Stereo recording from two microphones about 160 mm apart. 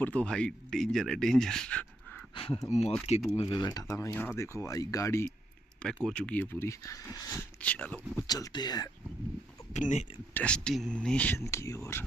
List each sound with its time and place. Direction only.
0.0 s speech: 5° left (ahead or behind)
2.3 s speech: 35° left (ahead or behind)
3.4 s speech: 25° left (ahead or behind)
5.8 s speech: 5° left (ahead or behind)
7.6 s speech: 10° left (ahead or behind)
8.3 s speech: 25° left (ahead or behind)
9.7 s speech: 45° left (ahead or behind)
10.3 s speech: 5° left (ahead or behind)